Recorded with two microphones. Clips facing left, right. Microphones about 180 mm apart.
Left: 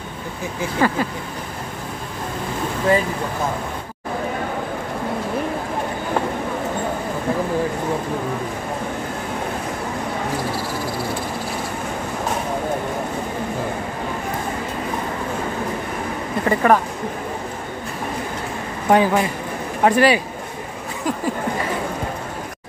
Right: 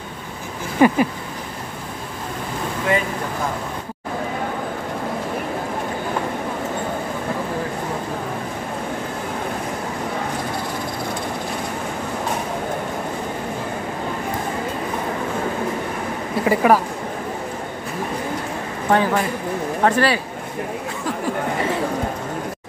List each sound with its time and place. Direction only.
0.7 s speech: 15° right (ahead or behind)
16.4 s speech: 5° right (ahead or behind)
18.9 s speech: 15° left (ahead or behind)